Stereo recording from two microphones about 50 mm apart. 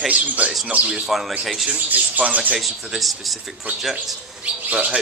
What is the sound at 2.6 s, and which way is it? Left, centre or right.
Speech, centre.